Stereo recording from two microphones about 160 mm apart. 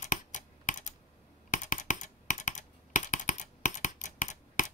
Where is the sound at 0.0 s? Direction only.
55° left (ahead or behind).